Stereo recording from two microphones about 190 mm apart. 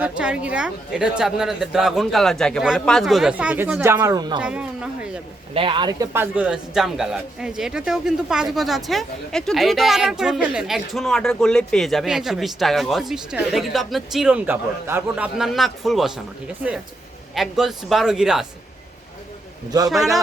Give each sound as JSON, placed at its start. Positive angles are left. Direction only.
{"t": 0.0, "sound": "a man's voice", "side_deg": -5}
{"t": 4.4, "sound": "speech", "side_deg": -5}
{"t": 5.5, "sound": "speech", "side_deg": -25}
{"t": 6.1, "sound": "a man's voice", "side_deg": -5}
{"t": 17.3, "sound": "a man's voice", "side_deg": 0}
{"t": 19.7, "sound": "speech", "side_deg": -20}